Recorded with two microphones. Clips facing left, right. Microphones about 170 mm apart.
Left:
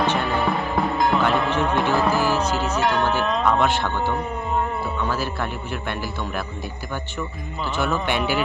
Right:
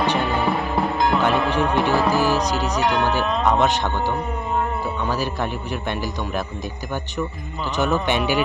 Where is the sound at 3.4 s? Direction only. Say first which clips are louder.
Right 2 dB; 20° right (ahead or behind).